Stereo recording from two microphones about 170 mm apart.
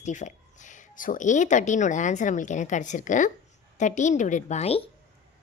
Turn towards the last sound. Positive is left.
turn(degrees=35)  # may be behind; listen again after turning